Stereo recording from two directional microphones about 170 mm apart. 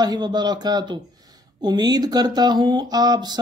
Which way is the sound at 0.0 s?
25° right (ahead or behind).